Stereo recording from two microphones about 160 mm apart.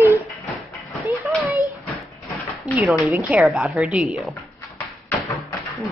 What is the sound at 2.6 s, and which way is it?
A woman's voice, 5° right (ahead or behind).